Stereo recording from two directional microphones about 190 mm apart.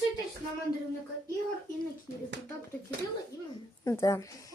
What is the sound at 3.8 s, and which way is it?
Speech, 15° left (ahead or behind).